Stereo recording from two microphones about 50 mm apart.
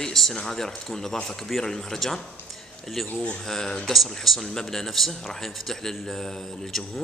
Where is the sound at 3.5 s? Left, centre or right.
Centre.